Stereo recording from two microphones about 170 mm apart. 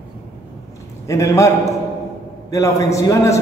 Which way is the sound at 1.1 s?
15° left (ahead or behind).